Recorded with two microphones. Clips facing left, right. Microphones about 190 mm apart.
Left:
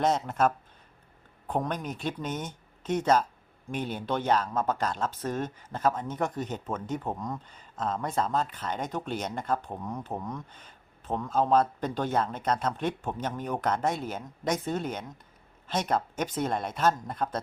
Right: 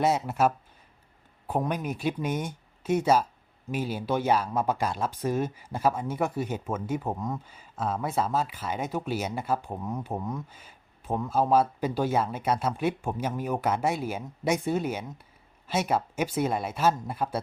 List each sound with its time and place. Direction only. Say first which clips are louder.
0.0 s speech: right 1 dB; 10° right (ahead or behind)